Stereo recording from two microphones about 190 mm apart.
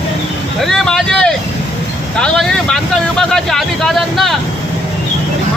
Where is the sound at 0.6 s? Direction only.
Centre (ahead or behind).